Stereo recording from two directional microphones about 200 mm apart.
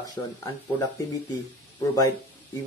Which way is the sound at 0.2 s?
20° left (ahead or behind).